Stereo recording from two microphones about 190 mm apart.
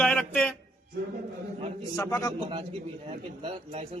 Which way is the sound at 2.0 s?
10° left (ahead or behind).